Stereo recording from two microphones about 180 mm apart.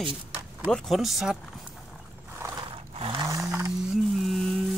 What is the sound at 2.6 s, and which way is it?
Sewing machine, 30° right (ahead or behind).